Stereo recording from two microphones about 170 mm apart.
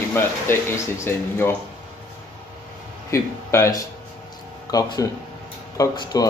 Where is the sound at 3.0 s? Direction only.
15° left (ahead or behind).